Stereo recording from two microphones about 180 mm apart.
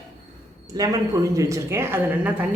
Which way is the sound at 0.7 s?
20° right (ahead or behind).